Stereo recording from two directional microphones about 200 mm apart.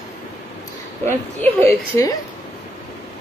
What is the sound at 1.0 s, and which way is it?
A woman's voice, 10° left (ahead or behind).